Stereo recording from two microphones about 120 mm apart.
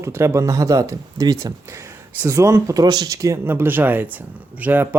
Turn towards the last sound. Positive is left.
turn(degrees=-15)  # may be behind; listen again after turning